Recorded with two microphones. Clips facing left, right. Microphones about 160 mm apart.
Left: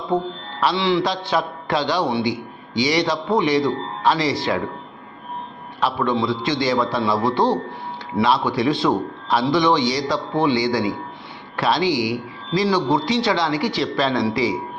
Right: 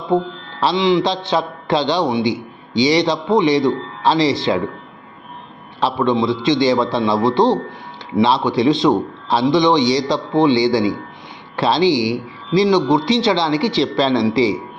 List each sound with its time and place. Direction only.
0.6 s a man's voice: 20° right (ahead or behind)
5.8 s a man's voice: 25° right (ahead or behind)